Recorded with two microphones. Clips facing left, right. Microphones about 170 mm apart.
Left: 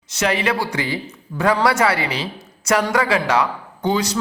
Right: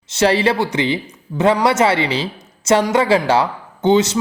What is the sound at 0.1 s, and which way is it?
Speech, 30° right (ahead or behind).